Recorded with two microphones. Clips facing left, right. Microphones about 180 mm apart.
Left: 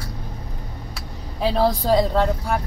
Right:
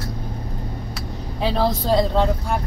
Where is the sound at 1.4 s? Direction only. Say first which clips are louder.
Left 1 dB; 5° left (ahead or behind).